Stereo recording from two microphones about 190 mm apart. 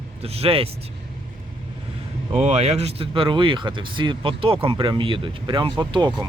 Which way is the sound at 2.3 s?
35° right (ahead or behind).